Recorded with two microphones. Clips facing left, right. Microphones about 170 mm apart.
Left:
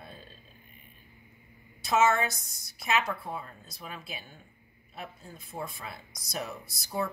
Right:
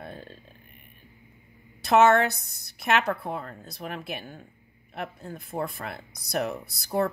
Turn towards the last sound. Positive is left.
turn(degrees=-65)  # may be behind; listen again after turning